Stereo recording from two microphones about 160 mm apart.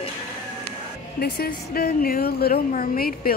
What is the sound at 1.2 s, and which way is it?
A woman's voice, 75° left (ahead or behind).